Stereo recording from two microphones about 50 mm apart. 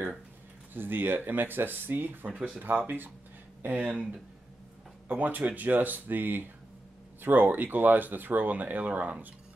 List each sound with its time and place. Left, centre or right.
0.7 s speech: right
3.9 s speech: right
5.0 s speech: right